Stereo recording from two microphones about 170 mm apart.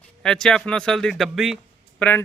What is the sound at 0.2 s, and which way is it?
Speech, 5° left (ahead or behind).